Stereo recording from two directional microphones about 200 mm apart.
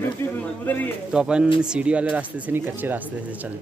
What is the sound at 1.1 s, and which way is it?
Speech, 5° right (ahead or behind).